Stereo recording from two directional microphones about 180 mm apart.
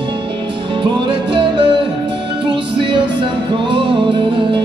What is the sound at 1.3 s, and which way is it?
Music, 25° right (ahead or behind).